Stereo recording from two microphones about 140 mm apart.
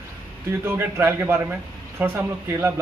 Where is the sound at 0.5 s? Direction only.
20° right (ahead or behind).